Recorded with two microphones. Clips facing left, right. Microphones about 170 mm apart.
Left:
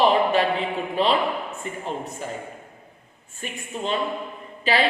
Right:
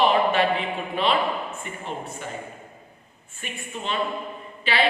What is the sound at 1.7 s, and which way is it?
Speech, 35° left (ahead or behind).